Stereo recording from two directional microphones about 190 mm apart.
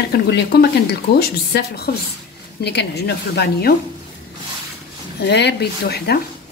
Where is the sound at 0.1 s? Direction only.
60° left (ahead or behind).